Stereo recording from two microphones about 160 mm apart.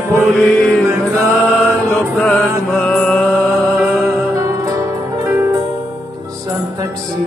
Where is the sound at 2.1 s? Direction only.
5° left (ahead or behind).